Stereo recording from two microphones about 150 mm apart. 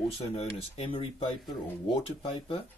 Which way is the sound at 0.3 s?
40° left (ahead or behind).